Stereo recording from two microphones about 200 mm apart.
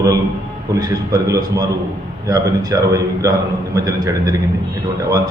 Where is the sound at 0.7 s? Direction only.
15° right (ahead or behind).